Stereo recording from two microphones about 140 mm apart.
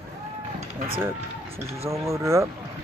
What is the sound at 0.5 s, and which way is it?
Run, 40° right (ahead or behind).